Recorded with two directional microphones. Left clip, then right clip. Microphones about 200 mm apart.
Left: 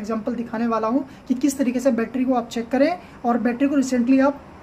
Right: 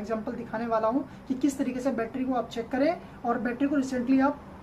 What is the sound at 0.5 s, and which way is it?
A woman's voice, 45° left (ahead or behind).